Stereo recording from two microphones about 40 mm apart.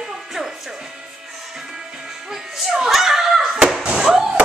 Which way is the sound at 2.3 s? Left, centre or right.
Centre.